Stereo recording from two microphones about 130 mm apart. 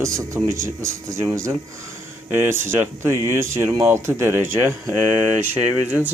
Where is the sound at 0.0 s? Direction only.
25° right (ahead or behind).